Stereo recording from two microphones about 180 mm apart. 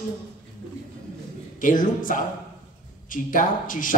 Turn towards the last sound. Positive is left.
turn(degrees=50)  # may be behind; listen again after turning